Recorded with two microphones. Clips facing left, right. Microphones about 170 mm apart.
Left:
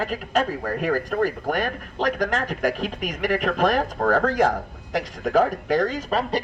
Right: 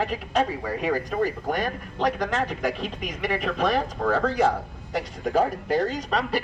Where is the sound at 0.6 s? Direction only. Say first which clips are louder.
Left 2 dB; 60° left (ahead or behind).